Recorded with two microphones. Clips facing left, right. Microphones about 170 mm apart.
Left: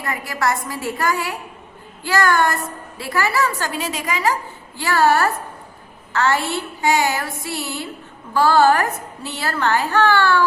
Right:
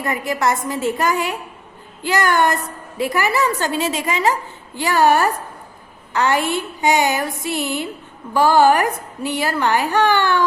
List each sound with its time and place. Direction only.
0.0 s a woman's voice: 20° right (ahead or behind)